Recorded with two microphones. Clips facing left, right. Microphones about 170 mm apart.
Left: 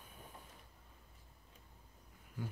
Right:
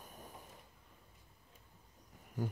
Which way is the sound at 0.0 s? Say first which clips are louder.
Right 4 dB; 40° right (ahead or behind).